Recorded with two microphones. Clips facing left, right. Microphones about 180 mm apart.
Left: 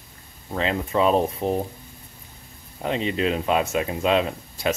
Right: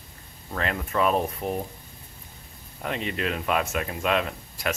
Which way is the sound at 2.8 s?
25° left (ahead or behind).